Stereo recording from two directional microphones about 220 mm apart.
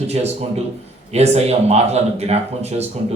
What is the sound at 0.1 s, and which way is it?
Speech, 30° right (ahead or behind).